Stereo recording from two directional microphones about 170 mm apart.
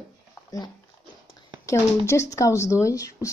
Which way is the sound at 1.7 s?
15° left (ahead or behind).